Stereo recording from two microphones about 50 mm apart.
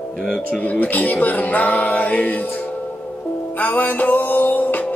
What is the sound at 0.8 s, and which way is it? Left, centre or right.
Music, left.